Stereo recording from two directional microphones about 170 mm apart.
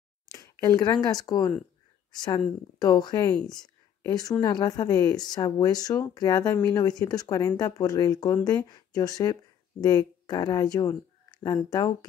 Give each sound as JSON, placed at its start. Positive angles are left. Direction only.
{"t": 0.3, "sound": "speech", "side_deg": 20}
{"t": 2.8, "sound": "speech", "side_deg": 25}